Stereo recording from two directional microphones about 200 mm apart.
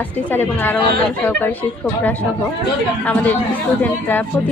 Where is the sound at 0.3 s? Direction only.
10° left (ahead or behind).